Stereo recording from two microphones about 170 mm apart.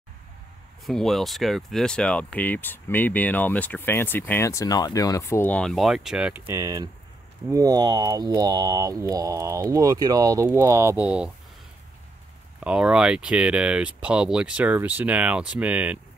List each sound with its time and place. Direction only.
0.8 s speech: centre (ahead or behind)
6.5 s speech: 20° right (ahead or behind)
12.5 s speech: 5° right (ahead or behind)